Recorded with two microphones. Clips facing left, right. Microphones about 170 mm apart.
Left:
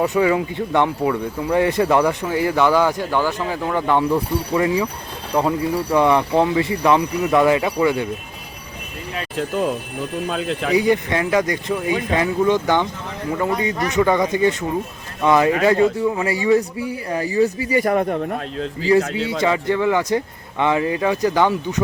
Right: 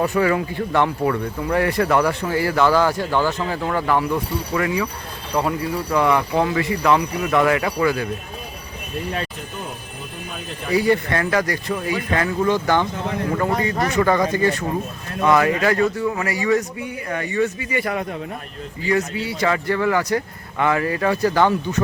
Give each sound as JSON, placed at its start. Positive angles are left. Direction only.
{"t": 0.0, "sound": "a man's voice", "side_deg": 15}
{"t": 4.5, "sound": "speech", "side_deg": 30}
{"t": 9.4, "sound": "speech", "side_deg": 90}
{"t": 10.8, "sound": "a man's voice", "side_deg": 15}
{"t": 18.9, "sound": "a man's voice", "side_deg": 30}